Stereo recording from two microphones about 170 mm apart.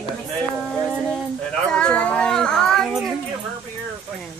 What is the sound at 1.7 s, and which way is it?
Speech, 5° left (ahead or behind).